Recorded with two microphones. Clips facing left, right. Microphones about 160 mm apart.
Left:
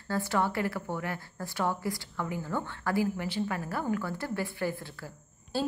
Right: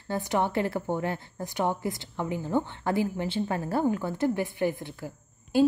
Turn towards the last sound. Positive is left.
turn(degrees=-15)  # may be behind; listen again after turning